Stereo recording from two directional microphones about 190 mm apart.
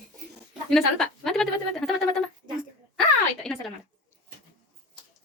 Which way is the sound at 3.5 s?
5° left (ahead or behind).